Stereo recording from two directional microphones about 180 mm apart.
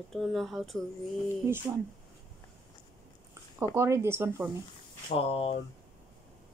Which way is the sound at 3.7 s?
15° right (ahead or behind).